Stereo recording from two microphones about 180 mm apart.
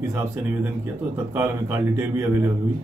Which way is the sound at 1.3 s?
10° right (ahead or behind).